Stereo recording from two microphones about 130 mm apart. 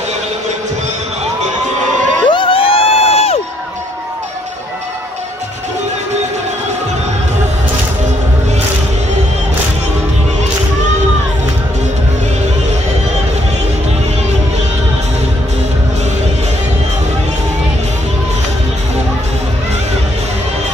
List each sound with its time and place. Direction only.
2.2 s crowd: 40° left (ahead or behind)